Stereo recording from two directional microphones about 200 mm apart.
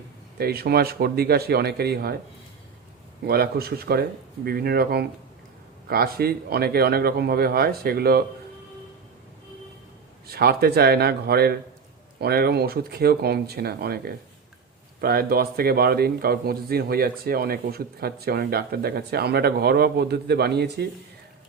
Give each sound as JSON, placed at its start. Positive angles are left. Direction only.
{"t": 0.3, "sound": "a man's voice", "side_deg": -50}
{"t": 3.2, "sound": "a man's voice", "side_deg": -50}
{"t": 10.2, "sound": "a man's voice", "side_deg": -50}